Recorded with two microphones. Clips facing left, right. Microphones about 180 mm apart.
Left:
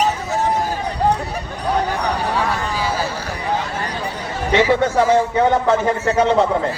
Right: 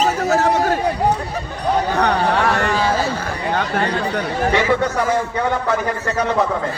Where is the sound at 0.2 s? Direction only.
75° right (ahead or behind).